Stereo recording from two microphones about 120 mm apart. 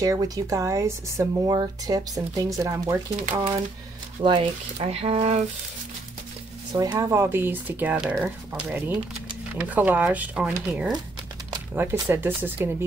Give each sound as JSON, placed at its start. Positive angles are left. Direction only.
{"t": 0.0, "sound": "speech", "side_deg": -30}
{"t": 4.2, "sound": "speech", "side_deg": -45}
{"t": 4.7, "sound": "speech", "side_deg": -55}
{"t": 6.7, "sound": "speech", "side_deg": -30}